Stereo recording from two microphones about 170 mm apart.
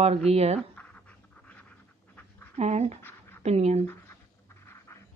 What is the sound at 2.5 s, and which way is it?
Speech, 40° right (ahead or behind).